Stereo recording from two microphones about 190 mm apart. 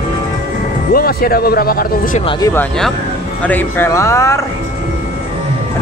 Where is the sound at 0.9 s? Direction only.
50° left (ahead or behind).